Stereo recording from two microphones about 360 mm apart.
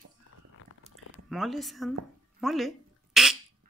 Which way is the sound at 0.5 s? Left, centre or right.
Left.